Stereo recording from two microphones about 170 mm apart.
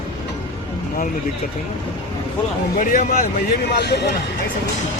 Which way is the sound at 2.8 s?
55° left (ahead or behind).